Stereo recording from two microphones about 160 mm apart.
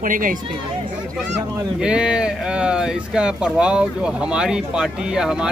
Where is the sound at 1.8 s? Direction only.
5° right (ahead or behind).